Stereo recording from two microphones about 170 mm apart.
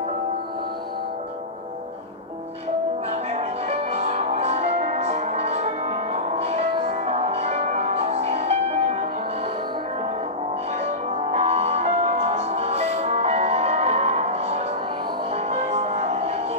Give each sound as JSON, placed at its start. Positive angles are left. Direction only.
{"t": 3.1, "sound": "music", "side_deg": -40}
{"t": 11.3, "sound": "music", "side_deg": -40}